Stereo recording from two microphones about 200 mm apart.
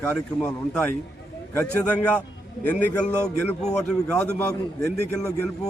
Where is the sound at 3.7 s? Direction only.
5° left (ahead or behind).